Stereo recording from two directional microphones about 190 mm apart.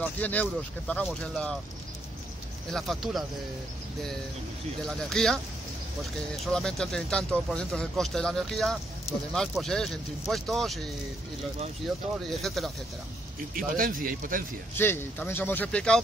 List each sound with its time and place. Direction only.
0.0 s speech: 10° left (ahead or behind)
2.7 s speech: centre (ahead or behind)
4.8 s speech: centre (ahead or behind)
6.4 s speech: 5° left (ahead or behind)
11.9 s speech: centre (ahead or behind)
13.7 s speech: 45° right (ahead or behind)
14.8 s speech: 10° left (ahead or behind)